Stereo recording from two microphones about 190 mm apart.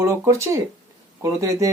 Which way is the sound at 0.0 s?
15° right (ahead or behind).